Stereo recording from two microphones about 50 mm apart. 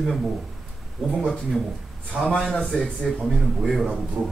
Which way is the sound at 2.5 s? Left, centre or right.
Centre.